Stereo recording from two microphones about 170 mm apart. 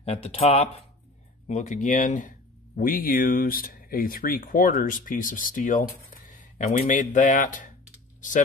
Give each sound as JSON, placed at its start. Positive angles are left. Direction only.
{"t": 0.0, "sound": "speech", "side_deg": 35}